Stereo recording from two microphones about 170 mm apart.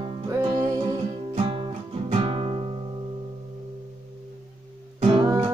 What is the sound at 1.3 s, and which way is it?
Music, 35° right (ahead or behind).